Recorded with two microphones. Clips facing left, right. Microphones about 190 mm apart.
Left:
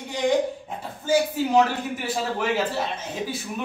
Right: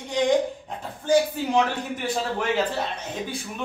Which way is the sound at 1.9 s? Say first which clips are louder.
Even; 5° left (ahead or behind).